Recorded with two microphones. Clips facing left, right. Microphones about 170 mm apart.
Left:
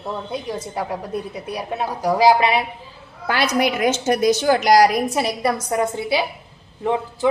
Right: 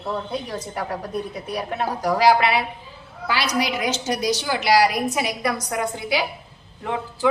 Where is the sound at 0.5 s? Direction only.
10° left (ahead or behind).